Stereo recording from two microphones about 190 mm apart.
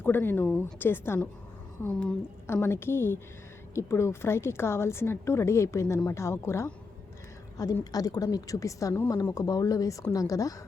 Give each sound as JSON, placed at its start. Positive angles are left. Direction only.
{"t": 0.0, "sound": "a woman's voice", "side_deg": 10}